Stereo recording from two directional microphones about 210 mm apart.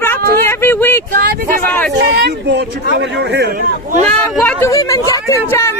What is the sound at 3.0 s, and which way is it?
Speech, 50° right (ahead or behind).